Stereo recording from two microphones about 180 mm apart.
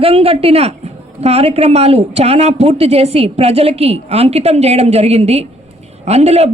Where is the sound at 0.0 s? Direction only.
35° right (ahead or behind).